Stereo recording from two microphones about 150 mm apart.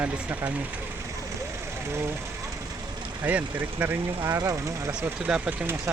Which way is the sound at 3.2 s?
10° right (ahead or behind).